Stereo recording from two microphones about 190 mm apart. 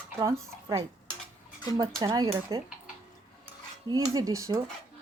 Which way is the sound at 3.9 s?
20° right (ahead or behind).